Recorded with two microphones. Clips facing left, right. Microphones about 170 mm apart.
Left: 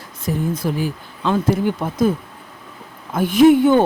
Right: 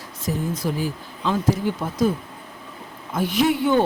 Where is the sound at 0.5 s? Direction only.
55° left (ahead or behind).